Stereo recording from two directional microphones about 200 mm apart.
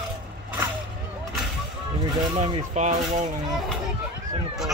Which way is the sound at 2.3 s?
35° right (ahead or behind).